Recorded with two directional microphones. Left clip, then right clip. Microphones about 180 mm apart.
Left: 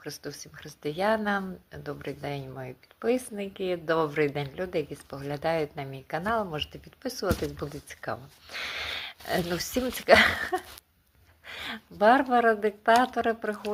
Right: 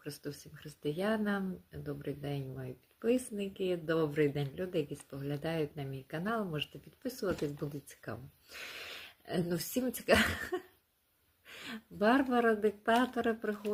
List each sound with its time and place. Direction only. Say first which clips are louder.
0.0 s speech: left 6 dB; 25° right (ahead or behind)